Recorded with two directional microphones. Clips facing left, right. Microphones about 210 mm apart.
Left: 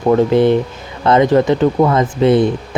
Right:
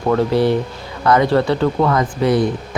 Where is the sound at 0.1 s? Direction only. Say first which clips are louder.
Left 4 dB; 20° left (ahead or behind).